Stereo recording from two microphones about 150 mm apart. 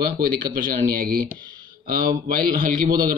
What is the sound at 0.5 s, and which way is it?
Speech, 70° right (ahead or behind).